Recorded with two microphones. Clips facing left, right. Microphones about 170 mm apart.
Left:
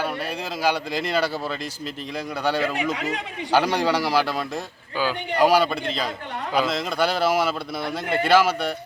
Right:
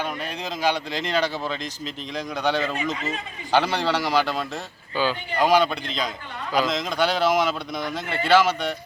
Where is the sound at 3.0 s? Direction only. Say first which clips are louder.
Left 2 dB; 80° left.